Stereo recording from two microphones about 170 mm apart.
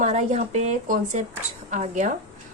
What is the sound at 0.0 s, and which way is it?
Speech, 40° right (ahead or behind).